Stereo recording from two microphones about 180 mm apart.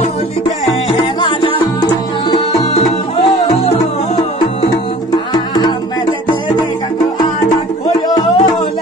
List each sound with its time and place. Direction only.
0.9 s music: 25° left (ahead or behind)
8.1 s music: 25° left (ahead or behind)